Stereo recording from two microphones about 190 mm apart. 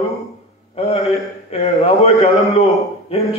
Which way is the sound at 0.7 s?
30° left (ahead or behind).